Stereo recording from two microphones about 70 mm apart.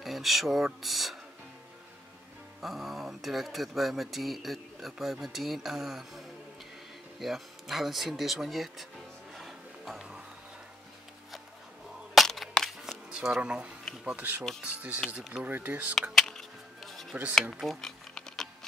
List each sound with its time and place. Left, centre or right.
0.0 s speech: centre
2.6 s speech: centre
9.3 s music: centre
12.1 s a sound: centre
13.1 s speech: centre
15.9 s music: centre
17.4 s typing: centre